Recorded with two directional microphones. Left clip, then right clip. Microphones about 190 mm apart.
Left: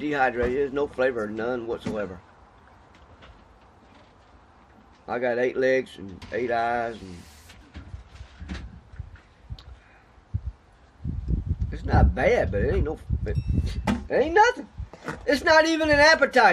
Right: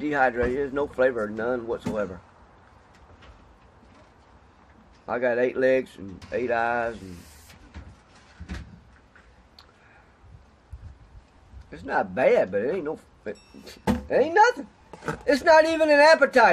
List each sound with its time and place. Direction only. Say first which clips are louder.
0.0 s speech: right 1 dB; 5° left (ahead or behind)
5.0 s speech: right 1 dB; centre (ahead or behind)
11.7 s speech: even; 5° left (ahead or behind)
14.9 s a sound: right 4 dB; 40° right (ahead or behind)
15.2 s speech: right 1 dB; centre (ahead or behind)